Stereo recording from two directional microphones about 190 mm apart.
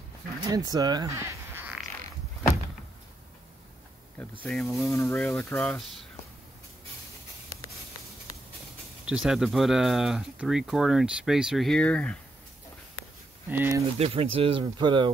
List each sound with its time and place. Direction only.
0.5 s speech: 20° right (ahead or behind)
4.2 s speech: 5° left (ahead or behind)
9.0 s speech: 5° right (ahead or behind)
13.5 s speech: 15° right (ahead or behind)
13.9 s speech: 30° right (ahead or behind)